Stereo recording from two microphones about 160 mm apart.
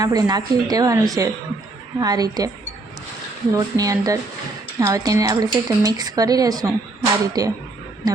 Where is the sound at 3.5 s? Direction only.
20° right (ahead or behind).